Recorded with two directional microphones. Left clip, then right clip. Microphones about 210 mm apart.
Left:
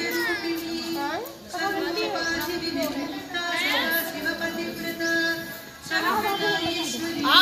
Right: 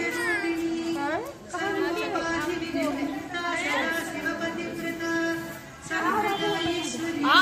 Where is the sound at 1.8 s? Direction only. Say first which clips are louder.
Left 1 dB; 50° right (ahead or behind).